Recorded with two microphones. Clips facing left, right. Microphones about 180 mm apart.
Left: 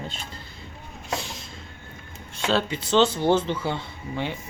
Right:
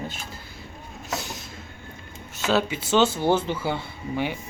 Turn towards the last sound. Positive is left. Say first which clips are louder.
# right 2 dB
turn(degrees=-10)  # may be behind; listen again after turning